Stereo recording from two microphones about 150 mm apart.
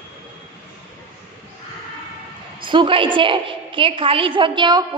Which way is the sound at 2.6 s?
35° right (ahead or behind).